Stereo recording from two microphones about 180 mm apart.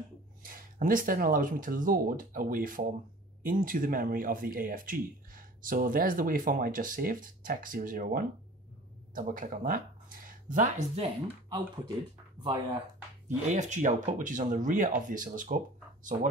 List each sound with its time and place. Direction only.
0.4 s speech: 50° right (ahead or behind)
12.4 s speech: 25° right (ahead or behind)
13.5 s speech: 40° right (ahead or behind)